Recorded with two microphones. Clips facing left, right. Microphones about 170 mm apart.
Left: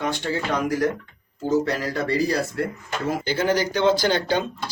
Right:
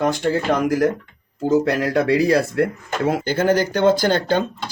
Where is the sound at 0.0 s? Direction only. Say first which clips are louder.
Right 6 dB; 50° right (ahead or behind).